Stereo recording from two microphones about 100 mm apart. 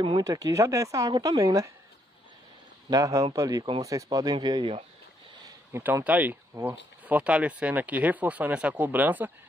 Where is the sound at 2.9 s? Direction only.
35° right (ahead or behind).